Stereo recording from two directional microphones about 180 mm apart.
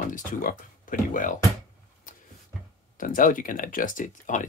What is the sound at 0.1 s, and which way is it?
Speech, 50° left (ahead or behind).